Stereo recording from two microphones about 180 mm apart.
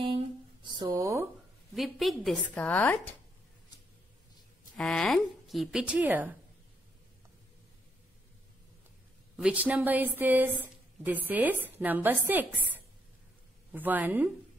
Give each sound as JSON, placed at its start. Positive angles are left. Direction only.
{"t": 0.0, "sound": "a sound", "side_deg": -25}
{"t": 1.7, "sound": "speech", "side_deg": 0}
{"t": 4.7, "sound": "speech", "side_deg": 5}
{"t": 9.4, "sound": "a woman's voice", "side_deg": -5}
{"t": 13.7, "sound": "a woman's voice", "side_deg": -10}